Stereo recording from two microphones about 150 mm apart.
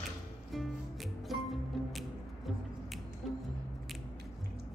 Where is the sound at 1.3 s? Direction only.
Centre (ahead or behind).